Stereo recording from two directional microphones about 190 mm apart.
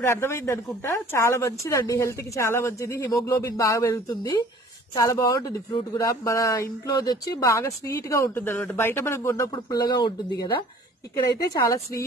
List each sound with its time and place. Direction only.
0.0 s speech: 15° left (ahead or behind)
11.5 s speech: 15° left (ahead or behind)